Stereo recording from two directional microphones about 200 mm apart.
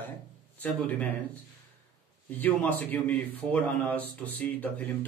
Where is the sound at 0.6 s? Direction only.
5° left (ahead or behind).